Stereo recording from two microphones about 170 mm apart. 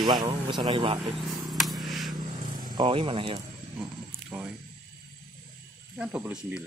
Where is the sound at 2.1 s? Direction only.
25° right (ahead or behind).